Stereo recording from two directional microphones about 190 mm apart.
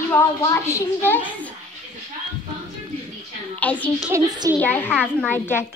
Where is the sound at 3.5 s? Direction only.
10° left (ahead or behind).